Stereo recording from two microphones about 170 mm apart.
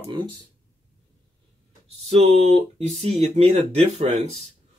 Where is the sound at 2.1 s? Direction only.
40° right (ahead or behind).